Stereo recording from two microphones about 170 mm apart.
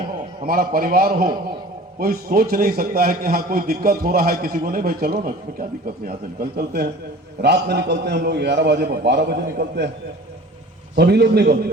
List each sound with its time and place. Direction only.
0.4 s a man's voice: 60° right (ahead or behind)
7.4 s a man's voice: 80° right
10.9 s a man's voice: 75° right (ahead or behind)